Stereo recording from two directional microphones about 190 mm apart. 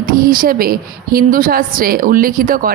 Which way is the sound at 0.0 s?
50° right (ahead or behind).